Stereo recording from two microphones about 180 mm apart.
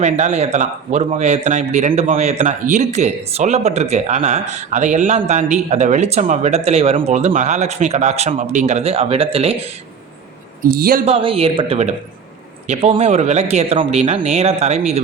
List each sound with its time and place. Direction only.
0.0 s speech: 40° right (ahead or behind)
10.7 s speech: 55° right (ahead or behind)
11.0 s a man's voice: 30° right (ahead or behind)